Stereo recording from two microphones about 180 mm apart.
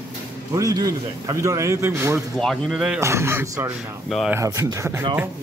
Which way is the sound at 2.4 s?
Centre (ahead or behind).